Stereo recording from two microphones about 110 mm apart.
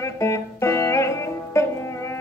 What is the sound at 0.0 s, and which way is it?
Music, 25° left (ahead or behind).